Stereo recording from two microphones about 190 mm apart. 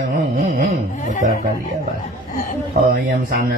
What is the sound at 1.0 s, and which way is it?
Speech, 40° left (ahead or behind).